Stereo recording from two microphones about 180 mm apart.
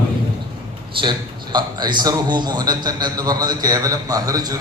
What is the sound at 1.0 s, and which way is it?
A man's voice, 25° right (ahead or behind).